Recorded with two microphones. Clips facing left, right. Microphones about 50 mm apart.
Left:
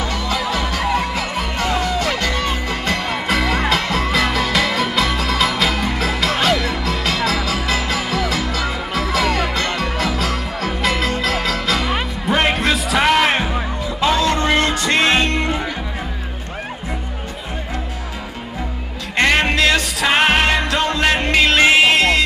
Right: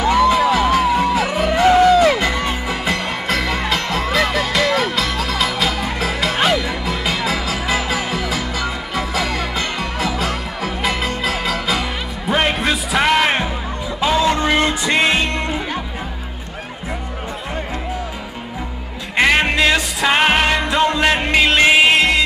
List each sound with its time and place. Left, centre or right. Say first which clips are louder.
0.1 s music: right 8 dB; right
0.6 s music: right 5 dB; centre
2.7 s music: even; centre
19.1 s music: right 1 dB; centre
20.1 s music: even; centre
20.6 s music: right 2 dB; centre